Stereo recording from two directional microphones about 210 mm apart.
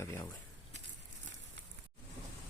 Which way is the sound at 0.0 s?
10° left (ahead or behind).